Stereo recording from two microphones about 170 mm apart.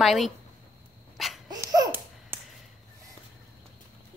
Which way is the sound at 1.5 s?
20° right (ahead or behind).